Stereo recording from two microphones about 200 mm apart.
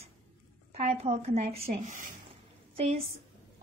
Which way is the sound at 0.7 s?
30° right (ahead or behind).